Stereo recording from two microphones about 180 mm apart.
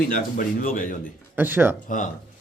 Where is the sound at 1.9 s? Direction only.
45° left (ahead or behind).